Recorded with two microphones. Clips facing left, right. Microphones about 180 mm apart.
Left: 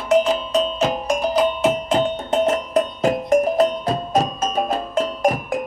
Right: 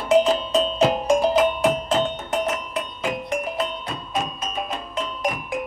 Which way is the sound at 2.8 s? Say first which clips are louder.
Left 8 dB; 40° left (ahead or behind).